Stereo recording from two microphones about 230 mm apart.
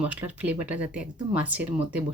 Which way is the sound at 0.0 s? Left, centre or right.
Centre.